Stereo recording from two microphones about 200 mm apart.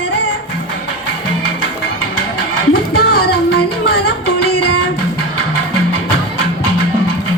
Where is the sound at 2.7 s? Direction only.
50° left (ahead or behind).